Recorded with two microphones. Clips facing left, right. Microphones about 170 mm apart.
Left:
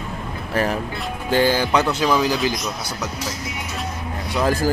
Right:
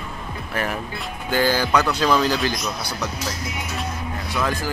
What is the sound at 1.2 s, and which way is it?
A man's voice, 25° left (ahead or behind).